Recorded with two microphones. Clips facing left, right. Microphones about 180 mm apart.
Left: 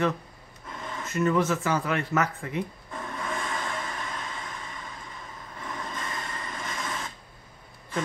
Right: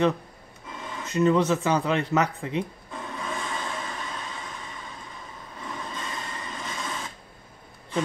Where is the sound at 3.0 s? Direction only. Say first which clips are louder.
Even; 5° right (ahead or behind).